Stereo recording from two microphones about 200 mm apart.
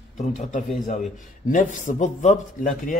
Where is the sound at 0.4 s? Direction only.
40° left (ahead or behind).